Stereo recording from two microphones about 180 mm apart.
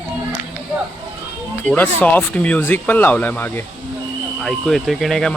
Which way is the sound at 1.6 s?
10° left (ahead or behind).